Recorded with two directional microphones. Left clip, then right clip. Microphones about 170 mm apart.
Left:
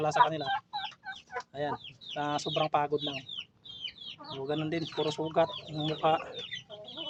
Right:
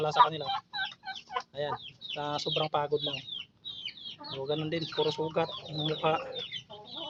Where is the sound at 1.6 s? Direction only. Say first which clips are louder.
Even; 15° left (ahead or behind).